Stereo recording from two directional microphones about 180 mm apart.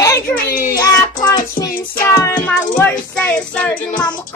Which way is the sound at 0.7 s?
20° left (ahead or behind).